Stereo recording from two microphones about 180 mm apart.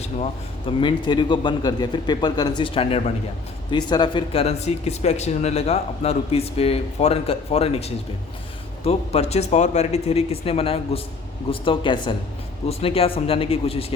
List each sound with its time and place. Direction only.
0.0 s a man's voice: 35° left (ahead or behind)